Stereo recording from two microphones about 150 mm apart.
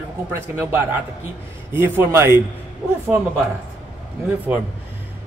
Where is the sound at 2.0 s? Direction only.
15° right (ahead or behind).